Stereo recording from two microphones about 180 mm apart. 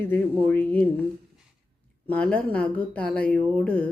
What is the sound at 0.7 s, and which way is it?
Speech, 10° left (ahead or behind).